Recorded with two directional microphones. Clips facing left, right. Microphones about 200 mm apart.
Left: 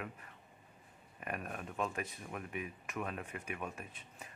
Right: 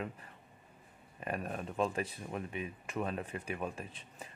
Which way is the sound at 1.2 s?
30° right (ahead or behind).